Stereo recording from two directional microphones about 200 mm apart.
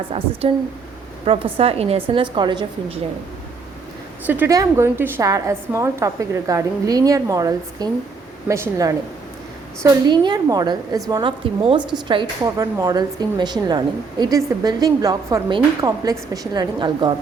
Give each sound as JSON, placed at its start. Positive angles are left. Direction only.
{"t": 0.4, "sound": "a woman's voice", "side_deg": -30}
{"t": 4.3, "sound": "a woman's voice", "side_deg": -10}